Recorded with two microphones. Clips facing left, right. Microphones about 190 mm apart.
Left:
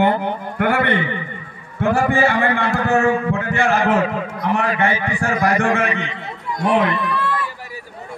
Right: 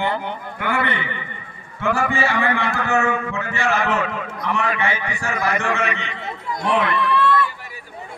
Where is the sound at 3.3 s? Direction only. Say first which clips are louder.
Left 4 dB; 55° left (ahead or behind).